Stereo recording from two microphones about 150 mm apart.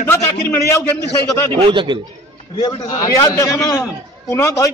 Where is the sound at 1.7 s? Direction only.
35° right (ahead or behind).